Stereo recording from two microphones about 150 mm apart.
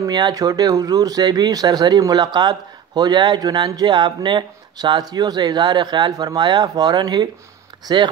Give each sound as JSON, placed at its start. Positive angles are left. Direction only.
{"t": 0.0, "sound": "speech", "side_deg": -25}